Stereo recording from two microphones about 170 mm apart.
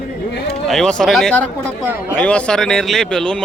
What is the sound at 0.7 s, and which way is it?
Speech, 5° left (ahead or behind).